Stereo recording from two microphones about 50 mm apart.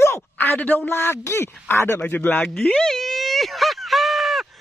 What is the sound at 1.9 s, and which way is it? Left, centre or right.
Speech, left.